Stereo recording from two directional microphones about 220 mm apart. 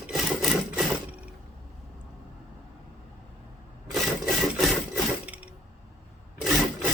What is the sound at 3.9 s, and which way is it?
Sewing machine, centre (ahead or behind).